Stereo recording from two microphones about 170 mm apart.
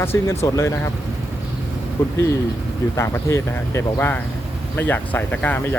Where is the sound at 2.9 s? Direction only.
15° left (ahead or behind).